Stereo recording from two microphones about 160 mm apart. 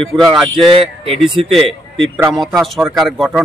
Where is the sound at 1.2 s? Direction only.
Centre (ahead or behind).